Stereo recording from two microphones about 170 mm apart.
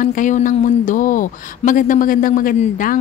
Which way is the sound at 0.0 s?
50° left (ahead or behind).